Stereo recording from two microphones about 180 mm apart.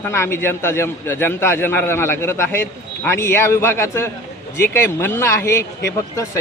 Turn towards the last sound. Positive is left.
turn(degrees=15)  # may be behind; listen again after turning